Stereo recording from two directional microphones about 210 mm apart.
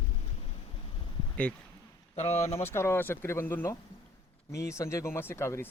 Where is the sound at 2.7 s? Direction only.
10° left (ahead or behind).